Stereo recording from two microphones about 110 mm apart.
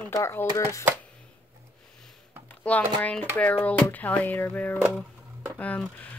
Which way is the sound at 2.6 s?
15° left (ahead or behind).